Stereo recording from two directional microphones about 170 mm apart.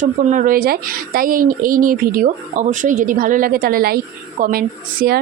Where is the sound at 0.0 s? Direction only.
50° right (ahead or behind).